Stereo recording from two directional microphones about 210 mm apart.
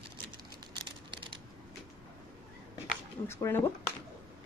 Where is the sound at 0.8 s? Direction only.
25° right (ahead or behind).